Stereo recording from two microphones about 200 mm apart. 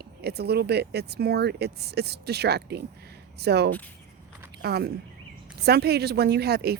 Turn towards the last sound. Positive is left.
turn(degrees=-55)  # may be behind; listen again after turning